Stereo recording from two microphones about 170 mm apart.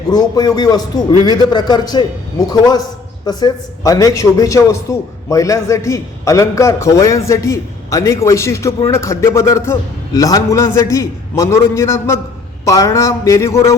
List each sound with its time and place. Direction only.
0.1 s a man's voice: 25° left (ahead or behind)